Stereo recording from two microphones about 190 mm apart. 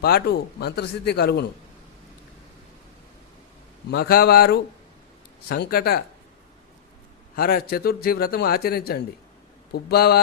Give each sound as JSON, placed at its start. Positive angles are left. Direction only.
{"t": 0.0, "sound": "speech", "side_deg": 55}
{"t": 3.9, "sound": "speech", "side_deg": 55}
{"t": 7.3, "sound": "a man's voice", "side_deg": 50}